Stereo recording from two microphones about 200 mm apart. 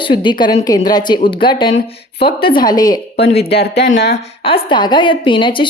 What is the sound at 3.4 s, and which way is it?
Speech, 55° left (ahead or behind).